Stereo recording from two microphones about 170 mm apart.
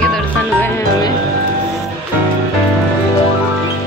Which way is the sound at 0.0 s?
5° left (ahead or behind).